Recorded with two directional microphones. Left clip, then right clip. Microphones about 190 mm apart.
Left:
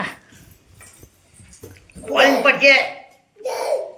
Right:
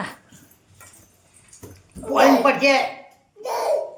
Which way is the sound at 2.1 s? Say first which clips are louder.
Left 1 dB; 40° right (ahead or behind).